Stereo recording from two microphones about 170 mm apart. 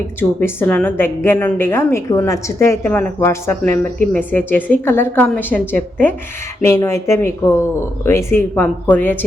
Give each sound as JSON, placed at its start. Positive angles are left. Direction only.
{"t": 0.2, "sound": "a woman's voice", "side_deg": 10}